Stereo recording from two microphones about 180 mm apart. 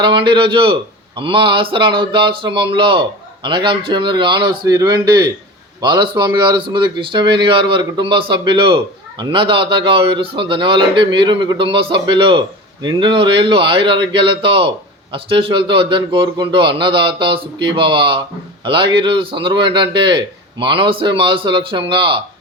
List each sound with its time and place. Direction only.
0.0 s a man's voice: 25° right (ahead or behind)